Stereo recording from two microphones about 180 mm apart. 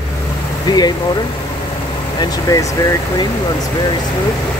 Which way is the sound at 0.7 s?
20° left (ahead or behind).